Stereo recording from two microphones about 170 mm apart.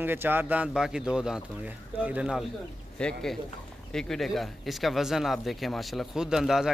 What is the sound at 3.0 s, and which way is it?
Speech, 5° left (ahead or behind).